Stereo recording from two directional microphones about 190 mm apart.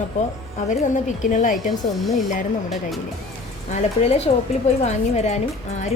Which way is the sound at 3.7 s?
35° left (ahead or behind).